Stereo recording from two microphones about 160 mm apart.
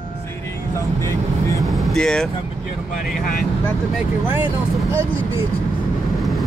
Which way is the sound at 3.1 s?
60° left (ahead or behind).